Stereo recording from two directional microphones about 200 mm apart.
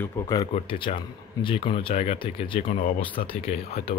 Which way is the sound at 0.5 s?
25° left (ahead or behind).